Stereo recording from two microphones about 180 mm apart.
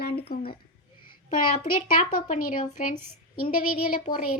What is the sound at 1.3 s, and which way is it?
A child's voice, 50° left (ahead or behind).